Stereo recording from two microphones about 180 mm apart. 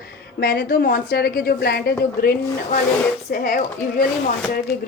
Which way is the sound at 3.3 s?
50° left (ahead or behind).